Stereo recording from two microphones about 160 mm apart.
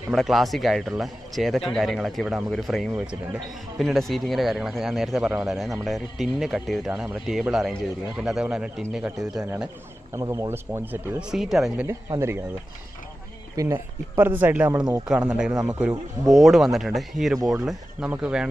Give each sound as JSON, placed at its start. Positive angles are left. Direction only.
{"t": 0.1, "sound": "a man's voice", "side_deg": 0}
{"t": 10.1, "sound": "speech", "side_deg": -20}
{"t": 11.9, "sound": "speech", "side_deg": -15}
{"t": 13.6, "sound": "speech", "side_deg": -25}
{"t": 14.1, "sound": "a man's voice", "side_deg": -10}